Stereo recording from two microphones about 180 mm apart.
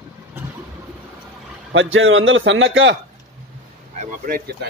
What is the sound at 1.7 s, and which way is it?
A man's voice, 90° right.